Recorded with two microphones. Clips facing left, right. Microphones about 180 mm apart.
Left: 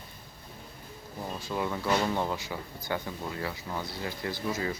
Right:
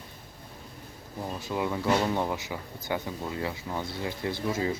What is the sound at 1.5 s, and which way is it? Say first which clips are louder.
Speech: right 2 dB; 15° right (ahead or behind).